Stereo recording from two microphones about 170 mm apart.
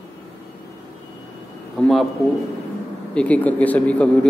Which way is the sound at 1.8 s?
Centre (ahead or behind).